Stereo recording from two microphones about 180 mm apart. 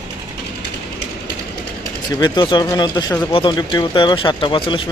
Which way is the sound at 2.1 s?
25° left (ahead or behind).